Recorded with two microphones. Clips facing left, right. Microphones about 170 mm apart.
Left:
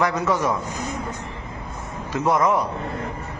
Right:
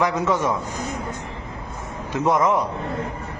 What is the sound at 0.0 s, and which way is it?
Speech, 15° right (ahead or behind).